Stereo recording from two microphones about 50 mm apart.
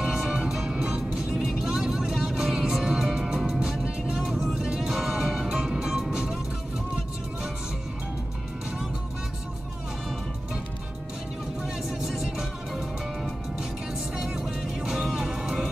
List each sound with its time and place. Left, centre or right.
0.0 s vehicle: centre
4.3 s music: centre
12.0 s music: centre